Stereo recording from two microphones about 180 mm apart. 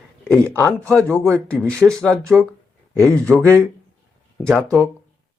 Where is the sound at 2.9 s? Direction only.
15° right (ahead or behind).